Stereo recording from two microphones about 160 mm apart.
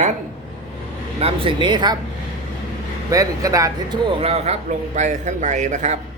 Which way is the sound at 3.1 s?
20° right (ahead or behind).